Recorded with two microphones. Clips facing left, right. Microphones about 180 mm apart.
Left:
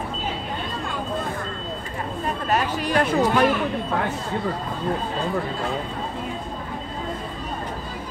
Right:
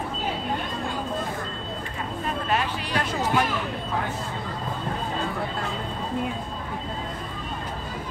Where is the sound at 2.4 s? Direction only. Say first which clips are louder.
Left 6 dB; 45° left (ahead or behind).